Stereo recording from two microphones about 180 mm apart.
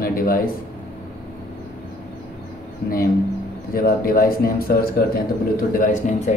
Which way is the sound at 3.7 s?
55° left (ahead or behind).